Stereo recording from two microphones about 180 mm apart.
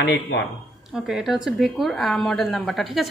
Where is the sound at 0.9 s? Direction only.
Centre (ahead or behind).